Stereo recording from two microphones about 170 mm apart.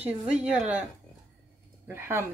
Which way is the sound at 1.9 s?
15° right (ahead or behind).